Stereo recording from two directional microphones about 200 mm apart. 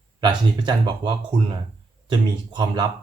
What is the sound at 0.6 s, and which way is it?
Speech, 25° right (ahead or behind).